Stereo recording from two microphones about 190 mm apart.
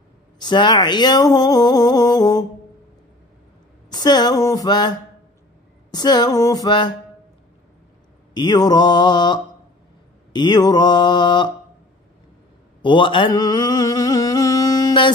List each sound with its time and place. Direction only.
0.4 s speech: 25° left (ahead or behind)
3.9 s speech: 20° left (ahead or behind)
8.4 s speech: 20° left (ahead or behind)
12.8 s a sound: 25° left (ahead or behind)